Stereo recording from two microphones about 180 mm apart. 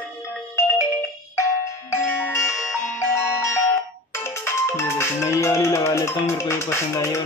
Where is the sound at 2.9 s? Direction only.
15° left (ahead or behind).